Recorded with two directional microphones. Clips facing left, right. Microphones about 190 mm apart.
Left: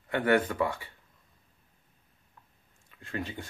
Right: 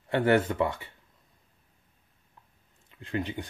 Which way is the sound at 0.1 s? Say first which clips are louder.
Right 2 dB; 25° right (ahead or behind).